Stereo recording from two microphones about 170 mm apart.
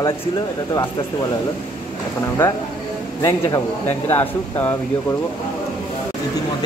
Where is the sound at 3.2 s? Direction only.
20° left (ahead or behind).